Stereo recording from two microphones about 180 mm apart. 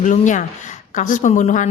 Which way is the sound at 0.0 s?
45° left (ahead or behind).